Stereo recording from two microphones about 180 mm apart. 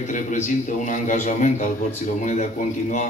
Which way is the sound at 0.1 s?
45° left (ahead or behind).